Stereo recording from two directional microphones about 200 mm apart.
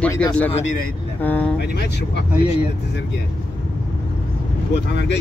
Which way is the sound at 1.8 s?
55° left (ahead or behind).